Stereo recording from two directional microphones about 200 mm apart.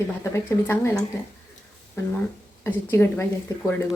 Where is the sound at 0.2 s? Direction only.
15° left (ahead or behind).